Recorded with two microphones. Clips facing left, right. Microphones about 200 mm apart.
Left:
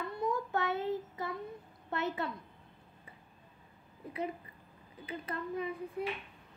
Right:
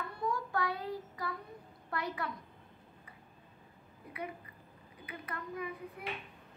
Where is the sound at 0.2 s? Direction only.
25° left (ahead or behind).